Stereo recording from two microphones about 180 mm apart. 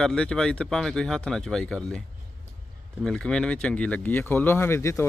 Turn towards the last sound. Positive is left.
turn(degrees=15)  # may be behind; listen again after turning